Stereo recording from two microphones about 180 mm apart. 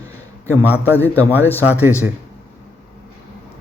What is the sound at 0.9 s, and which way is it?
A man's voice, 10° left (ahead or behind).